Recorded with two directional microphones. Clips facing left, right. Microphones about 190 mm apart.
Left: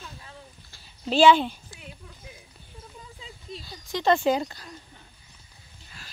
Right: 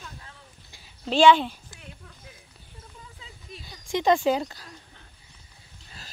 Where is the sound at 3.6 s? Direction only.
15° right (ahead or behind).